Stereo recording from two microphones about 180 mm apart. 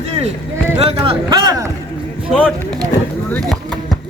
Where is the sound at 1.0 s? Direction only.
25° right (ahead or behind).